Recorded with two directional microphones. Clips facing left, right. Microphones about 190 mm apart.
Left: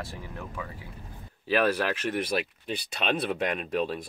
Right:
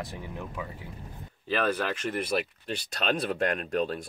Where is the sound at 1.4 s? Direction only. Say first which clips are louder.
Left 3 dB; 10° left (ahead or behind).